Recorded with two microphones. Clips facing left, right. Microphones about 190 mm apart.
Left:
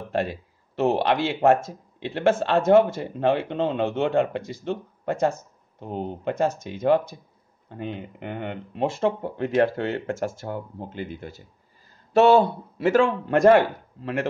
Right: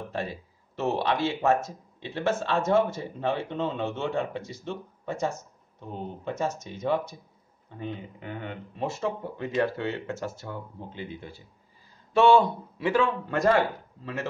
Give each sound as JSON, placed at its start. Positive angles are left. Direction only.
{"t": 0.1, "sound": "speech", "side_deg": 75}
{"t": 5.8, "sound": "speech", "side_deg": 65}
{"t": 7.7, "sound": "speech", "side_deg": 70}
{"t": 13.0, "sound": "speech", "side_deg": 65}